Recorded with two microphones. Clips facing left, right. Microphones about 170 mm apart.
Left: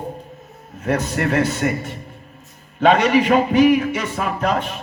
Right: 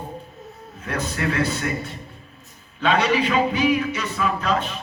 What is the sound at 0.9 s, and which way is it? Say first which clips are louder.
Music: left 5 dB; 60° left (ahead or behind).